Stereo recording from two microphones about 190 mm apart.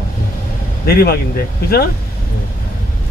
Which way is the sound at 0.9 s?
55° left (ahead or behind).